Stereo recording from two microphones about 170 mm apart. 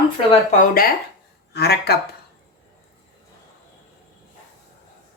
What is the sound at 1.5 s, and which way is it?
Speech, 70° left (ahead or behind).